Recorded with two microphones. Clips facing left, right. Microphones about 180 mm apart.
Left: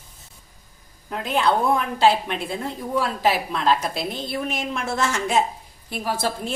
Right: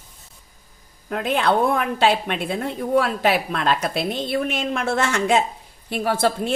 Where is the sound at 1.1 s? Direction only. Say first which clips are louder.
Right 1 dB; 60° right (ahead or behind).